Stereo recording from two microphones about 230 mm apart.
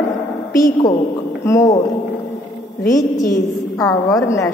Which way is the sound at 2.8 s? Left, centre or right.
Centre.